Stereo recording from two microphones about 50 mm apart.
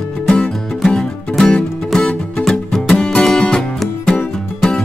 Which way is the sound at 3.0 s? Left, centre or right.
Centre.